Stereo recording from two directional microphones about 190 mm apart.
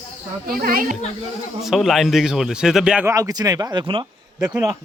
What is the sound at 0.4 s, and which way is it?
Speech, 50° right (ahead or behind).